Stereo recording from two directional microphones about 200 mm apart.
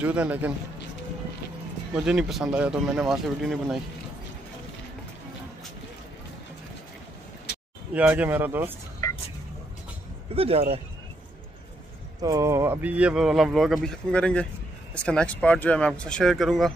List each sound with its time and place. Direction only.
0.0 s speech: 5° right (ahead or behind)
2.0 s speech: 5° right (ahead or behind)
7.9 s speech: 10° right (ahead or behind)
9.0 s vehicle: 20° left (ahead or behind)
10.3 s speech: 30° right (ahead or behind)
12.2 s speech: 15° right (ahead or behind); by 16.7 s centre (ahead or behind)